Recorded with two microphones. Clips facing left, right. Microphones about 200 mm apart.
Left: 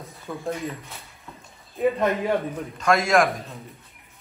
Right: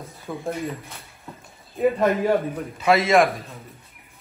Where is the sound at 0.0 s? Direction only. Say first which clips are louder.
Right 1 dB; centre (ahead or behind).